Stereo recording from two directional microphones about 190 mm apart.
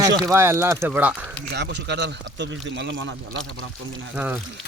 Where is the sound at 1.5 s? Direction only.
65° right (ahead or behind).